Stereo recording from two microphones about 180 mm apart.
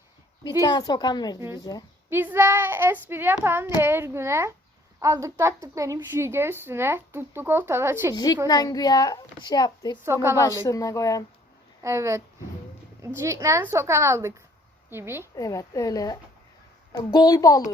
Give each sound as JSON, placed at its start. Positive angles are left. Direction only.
{"t": 0.6, "sound": "a woman's voice", "side_deg": 20}
{"t": 1.4, "sound": "a woman's voice", "side_deg": -15}
{"t": 8.1, "sound": "a woman's voice", "side_deg": 20}
{"t": 10.0, "sound": "a woman's voice", "side_deg": -15}
{"t": 10.3, "sound": "a woman's voice", "side_deg": 15}
{"t": 11.8, "sound": "a woman's voice", "side_deg": -15}
{"t": 15.4, "sound": "a woman's voice", "side_deg": 20}
{"t": 17.2, "sound": "a woman's voice", "side_deg": 20}